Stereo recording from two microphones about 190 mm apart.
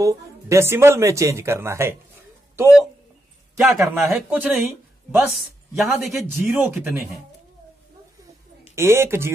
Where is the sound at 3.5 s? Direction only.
15° right (ahead or behind).